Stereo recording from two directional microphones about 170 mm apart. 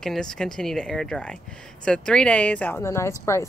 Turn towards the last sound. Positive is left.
turn(degrees=15)  # may be behind; listen again after turning